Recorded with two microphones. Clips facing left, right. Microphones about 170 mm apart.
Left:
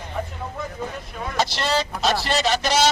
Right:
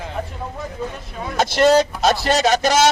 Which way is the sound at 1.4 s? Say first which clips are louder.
Right 9 dB; 50° right (ahead or behind).